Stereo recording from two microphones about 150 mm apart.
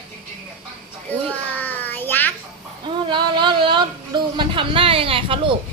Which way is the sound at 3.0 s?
35° right (ahead or behind).